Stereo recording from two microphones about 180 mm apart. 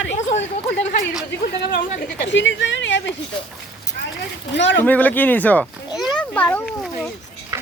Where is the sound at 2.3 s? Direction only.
90° left.